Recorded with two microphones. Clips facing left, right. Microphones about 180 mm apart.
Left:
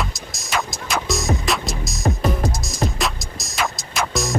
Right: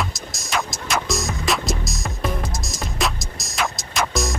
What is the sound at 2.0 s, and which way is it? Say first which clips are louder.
Music: left 7 dB; 40° left (ahead or behind).